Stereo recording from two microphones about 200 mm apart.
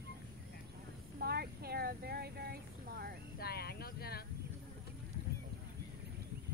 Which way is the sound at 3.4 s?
50° left (ahead or behind).